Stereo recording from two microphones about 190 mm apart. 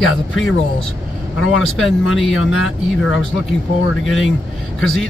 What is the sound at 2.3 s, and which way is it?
Speech, 90° left.